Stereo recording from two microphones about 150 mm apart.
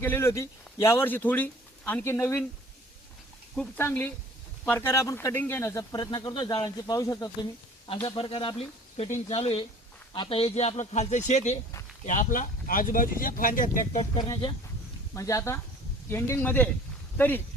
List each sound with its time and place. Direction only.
0.0 s speech: 15° left (ahead or behind)
3.8 s a man's voice: 15° left (ahead or behind)
8.0 s a man's voice: 35° left (ahead or behind); by 13.8 s 65° left (ahead or behind)
13.9 s speech: 40° left (ahead or behind)
15.1 s a man's voice: 20° left (ahead or behind)